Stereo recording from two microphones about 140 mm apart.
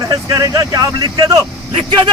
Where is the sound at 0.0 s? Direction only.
25° right (ahead or behind).